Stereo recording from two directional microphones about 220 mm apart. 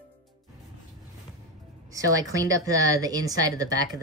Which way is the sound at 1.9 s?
15° right (ahead or behind).